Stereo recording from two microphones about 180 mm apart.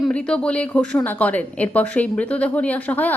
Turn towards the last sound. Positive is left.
turn(degrees=10)  # may be behind; listen again after turning